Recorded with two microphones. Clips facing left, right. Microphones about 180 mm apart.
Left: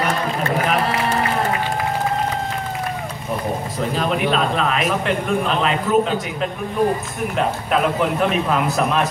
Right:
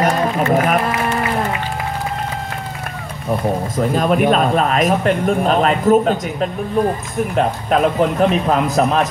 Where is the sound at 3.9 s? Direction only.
50° right (ahead or behind).